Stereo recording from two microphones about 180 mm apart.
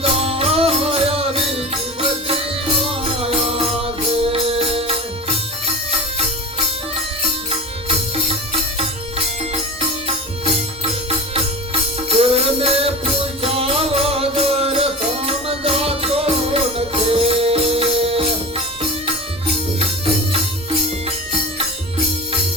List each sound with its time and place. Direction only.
0.0 s music: 35° right (ahead or behind)
7.9 s music: 30° right (ahead or behind)
11.3 s music: 30° right (ahead or behind)